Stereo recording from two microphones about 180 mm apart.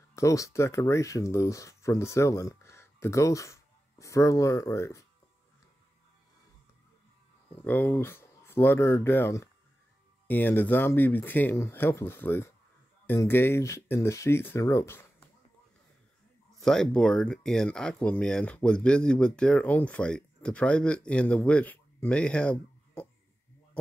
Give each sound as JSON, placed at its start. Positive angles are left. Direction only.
{"t": 0.1, "sound": "speech", "side_deg": 15}
{"t": 7.5, "sound": "speech", "side_deg": 10}
{"t": 16.6, "sound": "speech", "side_deg": 5}